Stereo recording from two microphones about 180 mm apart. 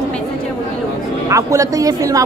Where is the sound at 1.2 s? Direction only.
15° right (ahead or behind).